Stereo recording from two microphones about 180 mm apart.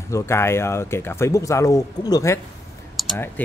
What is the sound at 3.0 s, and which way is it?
Clicking, centre (ahead or behind).